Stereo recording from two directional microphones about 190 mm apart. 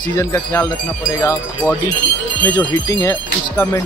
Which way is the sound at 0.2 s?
15° left (ahead or behind).